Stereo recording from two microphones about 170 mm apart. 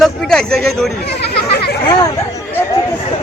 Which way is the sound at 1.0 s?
70° left (ahead or behind).